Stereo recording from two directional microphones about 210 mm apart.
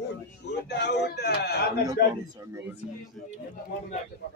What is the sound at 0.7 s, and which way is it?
Speech, 50° left (ahead or behind).